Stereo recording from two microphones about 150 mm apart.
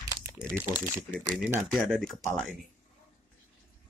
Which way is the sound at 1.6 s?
10° left (ahead or behind).